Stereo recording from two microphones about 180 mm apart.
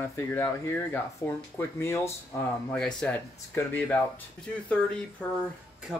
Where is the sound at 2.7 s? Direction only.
5° left (ahead or behind).